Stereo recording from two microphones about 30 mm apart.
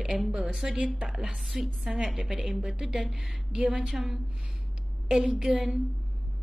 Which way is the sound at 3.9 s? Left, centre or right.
Centre.